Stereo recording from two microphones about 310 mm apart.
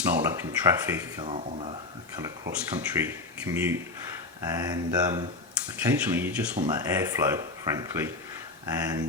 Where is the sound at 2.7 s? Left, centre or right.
Centre.